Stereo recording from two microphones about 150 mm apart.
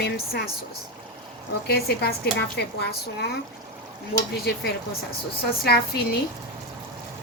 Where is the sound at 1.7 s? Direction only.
90° left.